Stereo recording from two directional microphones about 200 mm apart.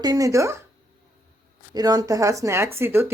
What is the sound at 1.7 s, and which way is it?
Speech, 20° right (ahead or behind).